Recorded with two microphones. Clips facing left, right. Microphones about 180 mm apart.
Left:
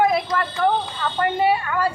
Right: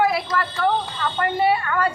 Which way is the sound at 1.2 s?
10° left (ahead or behind).